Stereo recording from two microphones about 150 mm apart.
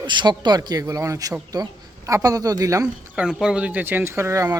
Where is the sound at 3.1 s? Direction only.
5° right (ahead or behind).